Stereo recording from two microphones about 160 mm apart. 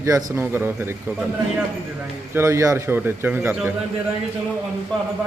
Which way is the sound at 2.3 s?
20° right (ahead or behind).